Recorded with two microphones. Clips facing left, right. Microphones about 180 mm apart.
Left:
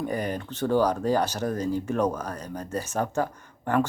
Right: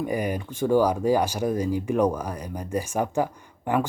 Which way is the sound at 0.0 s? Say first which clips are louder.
Right 2 dB; 10° right (ahead or behind).